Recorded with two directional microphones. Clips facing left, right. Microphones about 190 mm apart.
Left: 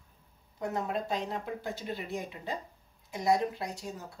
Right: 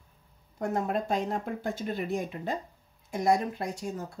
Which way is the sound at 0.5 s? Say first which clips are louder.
Right 4 dB; 50° right (ahead or behind).